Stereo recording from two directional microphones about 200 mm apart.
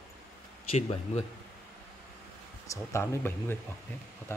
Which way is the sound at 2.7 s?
15° left (ahead or behind).